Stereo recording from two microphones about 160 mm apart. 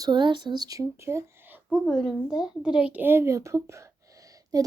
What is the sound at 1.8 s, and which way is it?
A woman's voice, centre (ahead or behind).